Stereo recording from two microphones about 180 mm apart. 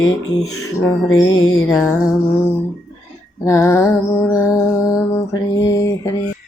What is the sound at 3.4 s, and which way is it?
Music, 15° left (ahead or behind).